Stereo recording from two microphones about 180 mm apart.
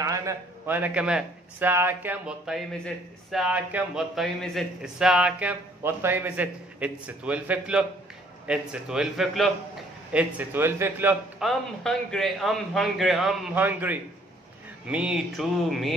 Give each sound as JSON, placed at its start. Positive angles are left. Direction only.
{"t": 0.0, "sound": "a man's voice", "side_deg": -15}
{"t": 11.4, "sound": "a man's voice", "side_deg": 5}